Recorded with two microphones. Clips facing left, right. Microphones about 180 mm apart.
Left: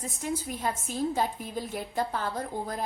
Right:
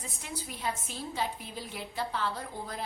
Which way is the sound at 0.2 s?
45° left (ahead or behind).